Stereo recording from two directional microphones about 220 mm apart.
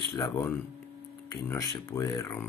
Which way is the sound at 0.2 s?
10° left (ahead or behind).